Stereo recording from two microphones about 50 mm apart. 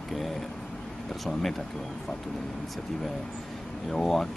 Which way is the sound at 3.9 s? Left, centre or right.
Centre.